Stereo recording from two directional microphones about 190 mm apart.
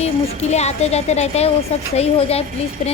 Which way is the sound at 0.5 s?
35° left (ahead or behind).